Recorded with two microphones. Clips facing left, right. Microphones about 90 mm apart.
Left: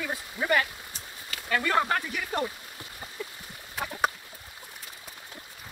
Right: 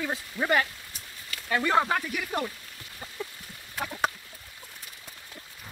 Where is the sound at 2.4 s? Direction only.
15° left (ahead or behind).